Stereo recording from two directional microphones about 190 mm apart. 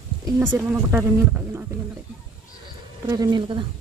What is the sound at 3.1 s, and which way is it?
Speech, 20° right (ahead or behind).